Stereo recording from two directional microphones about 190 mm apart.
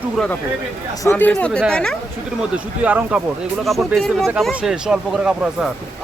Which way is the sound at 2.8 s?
5° right (ahead or behind).